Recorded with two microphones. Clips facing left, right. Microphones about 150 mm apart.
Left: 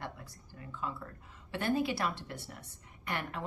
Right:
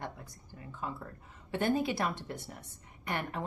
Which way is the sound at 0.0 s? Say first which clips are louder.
Right 1 dB; 20° right (ahead or behind).